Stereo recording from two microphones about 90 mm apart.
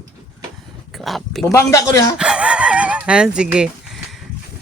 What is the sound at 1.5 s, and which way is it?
Speech, 35° left (ahead or behind).